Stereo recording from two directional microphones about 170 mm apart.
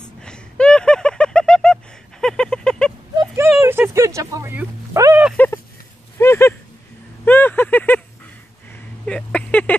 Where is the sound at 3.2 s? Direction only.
15° right (ahead or behind).